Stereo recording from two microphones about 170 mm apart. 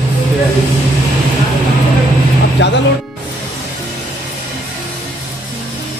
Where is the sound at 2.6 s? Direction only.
90° left.